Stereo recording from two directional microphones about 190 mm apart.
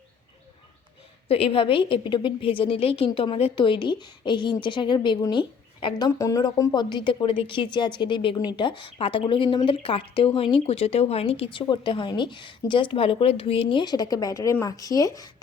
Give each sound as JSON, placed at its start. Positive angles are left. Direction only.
{"t": 1.3, "sound": "a woman's voice", "side_deg": 30}